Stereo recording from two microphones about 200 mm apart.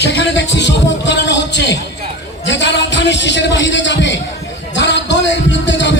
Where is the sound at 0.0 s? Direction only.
60° left (ahead or behind).